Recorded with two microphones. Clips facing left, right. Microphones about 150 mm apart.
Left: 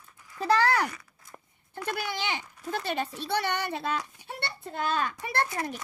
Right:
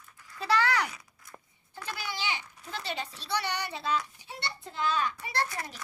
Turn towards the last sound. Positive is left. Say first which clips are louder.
# left 4 dB
turn(degrees=50)  # may be behind; listen again after turning